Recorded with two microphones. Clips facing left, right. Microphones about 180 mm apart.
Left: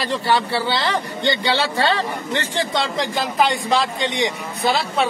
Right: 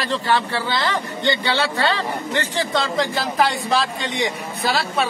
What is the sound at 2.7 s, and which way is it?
Speech, 20° left (ahead or behind).